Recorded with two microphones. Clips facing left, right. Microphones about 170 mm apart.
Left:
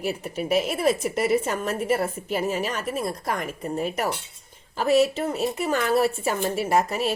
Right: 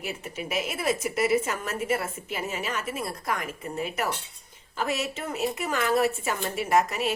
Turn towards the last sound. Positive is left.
turn(degrees=35)  # may be behind; listen again after turning